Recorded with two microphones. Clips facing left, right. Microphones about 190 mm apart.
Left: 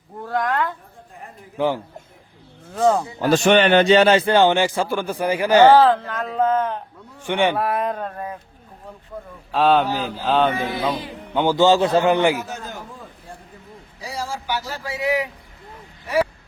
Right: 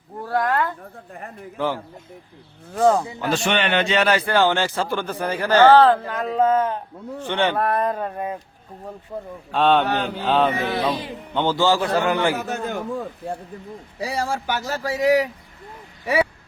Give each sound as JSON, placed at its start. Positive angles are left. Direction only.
{"t": 0.2, "sound": "a sound", "side_deg": -5}
{"t": 1.5, "sound": "speech", "side_deg": 15}
{"t": 2.7, "sound": "mantra", "side_deg": 0}
{"t": 3.2, "sound": "a man's voice", "side_deg": 40}
{"t": 6.1, "sound": "speech", "side_deg": -10}
{"t": 7.2, "sound": "speech", "side_deg": 10}
{"t": 7.6, "sound": "mantra", "side_deg": 0}
{"t": 9.5, "sound": "mantra", "side_deg": 0}
{"t": 11.3, "sound": "a man's voice", "side_deg": 15}
{"t": 12.5, "sound": "a man's voice", "side_deg": -65}
{"t": 14.0, "sound": "speech", "side_deg": -60}